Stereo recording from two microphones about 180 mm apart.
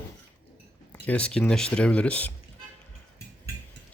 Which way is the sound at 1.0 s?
5° left (ahead or behind).